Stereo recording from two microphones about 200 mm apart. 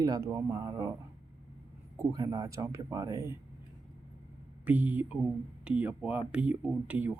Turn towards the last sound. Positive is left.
turn(degrees=-5)  # may be behind; listen again after turning